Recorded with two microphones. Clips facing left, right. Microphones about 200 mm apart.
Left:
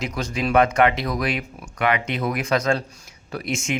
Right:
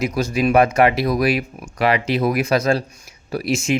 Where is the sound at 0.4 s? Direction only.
25° right (ahead or behind).